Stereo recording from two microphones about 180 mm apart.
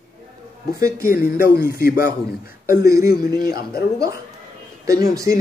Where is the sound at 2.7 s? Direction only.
15° right (ahead or behind).